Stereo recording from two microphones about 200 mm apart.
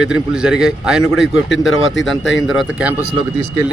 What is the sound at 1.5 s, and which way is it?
Speech, 75° left (ahead or behind).